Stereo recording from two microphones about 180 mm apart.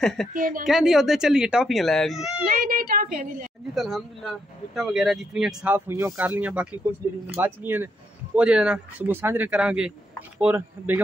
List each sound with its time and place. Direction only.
0.0 s speech: centre (ahead or behind)
0.3 s a woman's voice: 50° right (ahead or behind)
0.7 s speech: 5° right (ahead or behind)
2.4 s a woman's voice: 50° right (ahead or behind)
3.7 s speech: centre (ahead or behind)